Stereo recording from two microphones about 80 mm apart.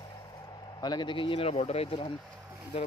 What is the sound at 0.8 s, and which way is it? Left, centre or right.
Speech, left.